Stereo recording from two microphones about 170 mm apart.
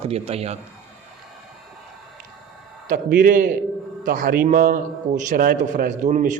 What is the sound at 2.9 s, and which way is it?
A man's voice, 55° right (ahead or behind).